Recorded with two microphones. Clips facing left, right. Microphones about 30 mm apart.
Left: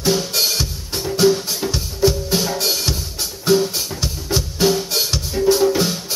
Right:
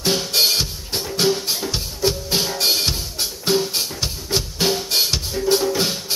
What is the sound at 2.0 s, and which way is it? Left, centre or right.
Music, right.